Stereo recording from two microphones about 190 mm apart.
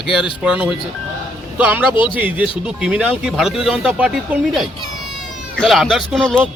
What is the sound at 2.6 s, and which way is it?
Speech, 5° right (ahead or behind).